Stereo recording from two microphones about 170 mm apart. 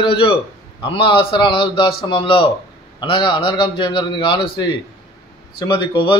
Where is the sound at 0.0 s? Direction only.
30° left (ahead or behind).